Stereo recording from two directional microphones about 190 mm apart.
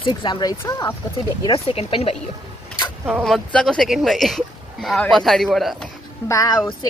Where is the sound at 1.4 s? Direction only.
30° left (ahead or behind).